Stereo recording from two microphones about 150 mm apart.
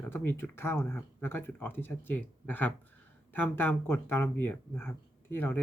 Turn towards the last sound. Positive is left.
turn(degrees=15)  # may be behind; listen again after turning